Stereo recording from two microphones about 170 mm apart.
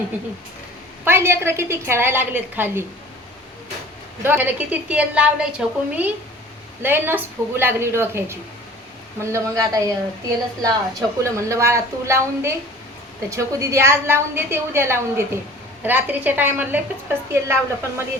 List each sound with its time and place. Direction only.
1.0 s a woman's voice: 15° right (ahead or behind)
4.2 s a woman's voice: 10° right (ahead or behind)